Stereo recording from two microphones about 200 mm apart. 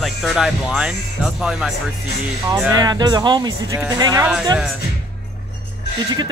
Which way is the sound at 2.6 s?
15° right (ahead or behind).